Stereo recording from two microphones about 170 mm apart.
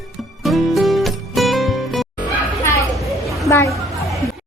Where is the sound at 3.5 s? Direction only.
20° left (ahead or behind).